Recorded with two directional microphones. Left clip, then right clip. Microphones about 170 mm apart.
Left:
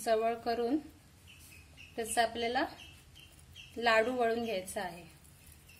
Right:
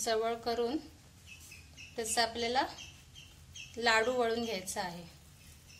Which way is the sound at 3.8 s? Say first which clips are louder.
Even; 45° left (ahead or behind).